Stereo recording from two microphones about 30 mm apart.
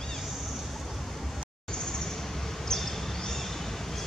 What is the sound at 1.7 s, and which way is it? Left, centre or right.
Vehicle, left.